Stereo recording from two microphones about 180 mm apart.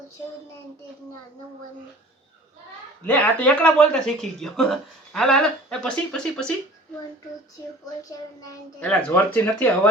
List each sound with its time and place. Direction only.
3.1 s speech: 5° left (ahead or behind)
8.8 s speech: 10° left (ahead or behind)